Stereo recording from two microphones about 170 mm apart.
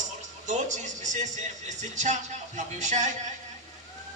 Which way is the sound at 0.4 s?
45° right (ahead or behind).